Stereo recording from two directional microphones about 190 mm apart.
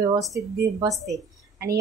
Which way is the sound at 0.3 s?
15° right (ahead or behind).